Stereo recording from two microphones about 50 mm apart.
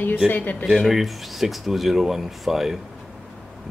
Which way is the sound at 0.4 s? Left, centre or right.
Left.